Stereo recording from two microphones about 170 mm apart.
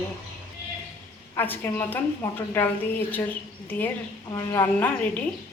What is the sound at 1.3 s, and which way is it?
A woman's voice, 15° left (ahead or behind).